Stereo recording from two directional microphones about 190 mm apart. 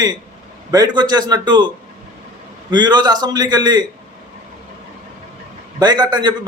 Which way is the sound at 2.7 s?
20° right (ahead or behind).